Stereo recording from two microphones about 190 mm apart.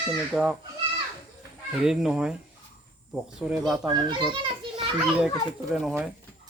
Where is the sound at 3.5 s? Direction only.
Centre (ahead or behind).